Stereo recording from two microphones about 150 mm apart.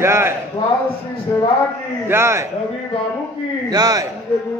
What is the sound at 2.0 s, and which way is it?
Speech, 15° right (ahead or behind).